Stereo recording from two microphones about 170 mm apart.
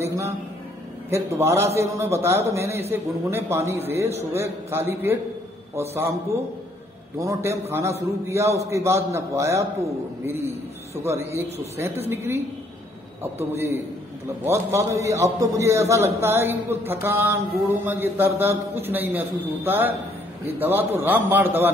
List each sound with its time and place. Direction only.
0.0 s music: 15° right (ahead or behind)
1.1 s mantra: 15° right (ahead or behind)
7.2 s mantra: 15° right (ahead or behind)
11.7 s mantra: 15° right (ahead or behind)
13.5 s mantra: 15° right (ahead or behind)